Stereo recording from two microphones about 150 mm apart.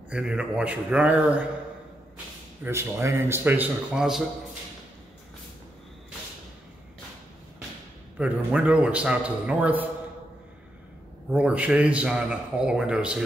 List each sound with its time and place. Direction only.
0.1 s a man's voice: 5° right (ahead or behind)
2.6 s a man's voice: 15° right (ahead or behind)
8.2 s a man's voice: 10° right (ahead or behind)
11.3 s a man's voice: 10° right (ahead or behind)